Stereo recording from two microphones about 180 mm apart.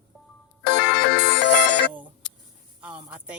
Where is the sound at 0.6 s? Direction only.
85° left; by 1.9 s 70° left (ahead or behind).